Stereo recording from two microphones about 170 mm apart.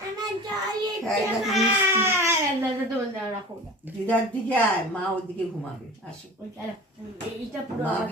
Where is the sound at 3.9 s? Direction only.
10° right (ahead or behind).